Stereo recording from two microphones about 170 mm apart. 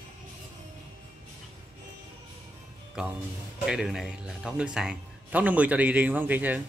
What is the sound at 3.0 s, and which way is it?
A man's voice, 5° right (ahead or behind).